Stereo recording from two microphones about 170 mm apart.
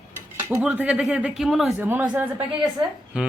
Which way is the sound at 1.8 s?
10° right (ahead or behind).